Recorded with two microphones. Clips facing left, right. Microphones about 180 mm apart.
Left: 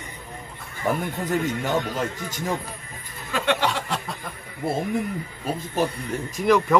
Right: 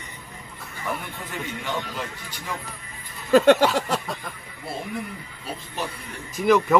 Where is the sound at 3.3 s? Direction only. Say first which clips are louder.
Right 9 dB; 40° right (ahead or behind).